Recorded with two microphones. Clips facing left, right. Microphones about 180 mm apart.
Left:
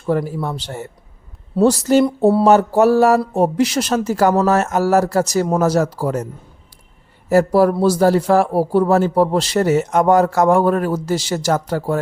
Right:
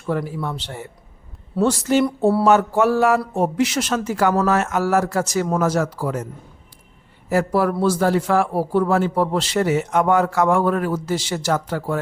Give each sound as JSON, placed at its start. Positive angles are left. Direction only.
{"t": 0.0, "sound": "speech", "side_deg": 35}
{"t": 7.3, "sound": "speech", "side_deg": 40}